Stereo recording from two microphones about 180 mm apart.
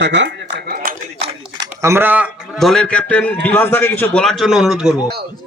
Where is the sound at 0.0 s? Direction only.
75° right (ahead or behind); by 0.9 s 60° right (ahead or behind).